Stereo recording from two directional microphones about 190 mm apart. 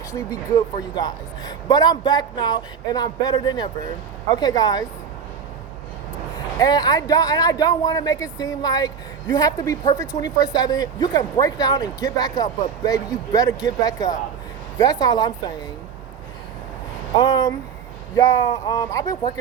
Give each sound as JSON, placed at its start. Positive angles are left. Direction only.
{"t": 0.1, "sound": "speech", "side_deg": 15}
{"t": 6.6, "sound": "speech", "side_deg": 20}
{"t": 17.2, "sound": "speech", "side_deg": 20}